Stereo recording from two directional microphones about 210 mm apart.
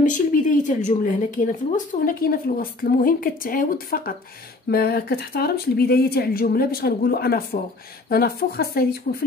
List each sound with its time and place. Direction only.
0.0 s a woman's voice: 40° left (ahead or behind)